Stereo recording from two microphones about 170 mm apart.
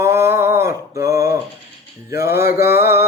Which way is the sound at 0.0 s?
15° right (ahead or behind).